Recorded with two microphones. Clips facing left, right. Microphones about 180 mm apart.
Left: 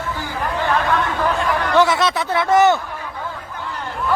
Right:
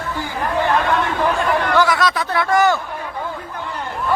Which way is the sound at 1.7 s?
25° left (ahead or behind).